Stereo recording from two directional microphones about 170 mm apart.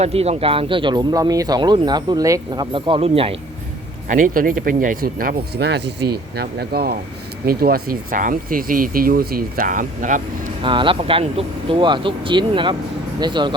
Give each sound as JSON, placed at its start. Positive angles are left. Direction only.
{"t": 0.0, "sound": "speech", "side_deg": -35}
{"t": 4.1, "sound": "speech", "side_deg": -50}
{"t": 10.6, "sound": "speech", "side_deg": -30}